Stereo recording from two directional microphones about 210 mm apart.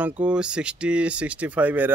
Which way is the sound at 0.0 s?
5° right (ahead or behind).